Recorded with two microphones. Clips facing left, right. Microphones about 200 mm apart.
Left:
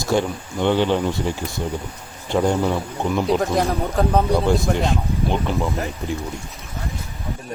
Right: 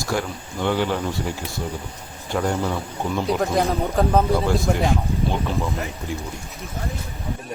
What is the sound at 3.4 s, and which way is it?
Speech, centre (ahead or behind).